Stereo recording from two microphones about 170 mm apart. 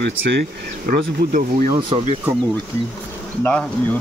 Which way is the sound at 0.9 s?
50° right (ahead or behind).